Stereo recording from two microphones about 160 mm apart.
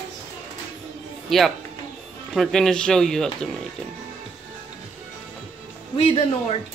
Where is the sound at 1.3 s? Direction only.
Centre (ahead or behind).